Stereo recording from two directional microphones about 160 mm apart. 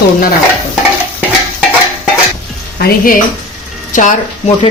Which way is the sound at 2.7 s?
60° left (ahead or behind).